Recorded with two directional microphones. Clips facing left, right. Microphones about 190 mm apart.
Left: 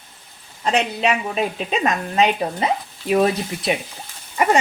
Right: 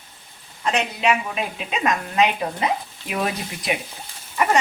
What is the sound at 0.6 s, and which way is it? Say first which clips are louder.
A woman's voice: left 2 dB; 35° left (ahead or behind).